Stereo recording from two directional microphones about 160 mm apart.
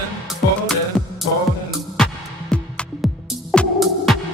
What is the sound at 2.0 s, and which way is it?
Music, 5° left (ahead or behind).